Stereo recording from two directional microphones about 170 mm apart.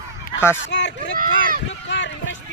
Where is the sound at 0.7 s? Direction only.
90° left.